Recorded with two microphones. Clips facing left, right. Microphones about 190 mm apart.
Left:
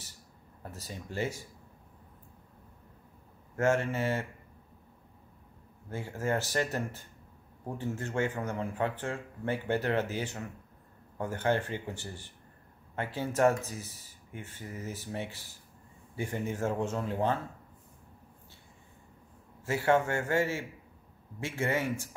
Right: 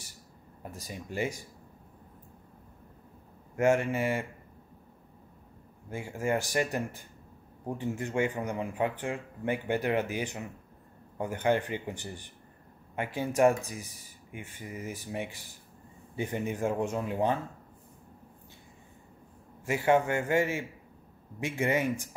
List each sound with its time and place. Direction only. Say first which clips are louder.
0.6 s speech: right 2 dB; 15° right (ahead or behind)
3.5 s speech: right 2 dB; 15° right (ahead or behind)
5.9 s speech: right 2 dB; 15° right (ahead or behind)
19.6 s speech: right 1 dB; 15° right (ahead or behind)